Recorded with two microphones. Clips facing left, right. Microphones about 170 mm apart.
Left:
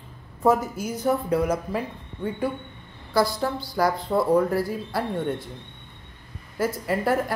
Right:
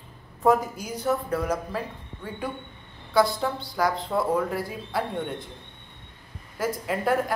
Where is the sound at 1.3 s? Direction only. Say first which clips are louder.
Left 4 dB; 15° left (ahead or behind).